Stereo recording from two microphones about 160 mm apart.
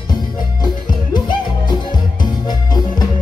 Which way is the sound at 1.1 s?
30° left (ahead or behind).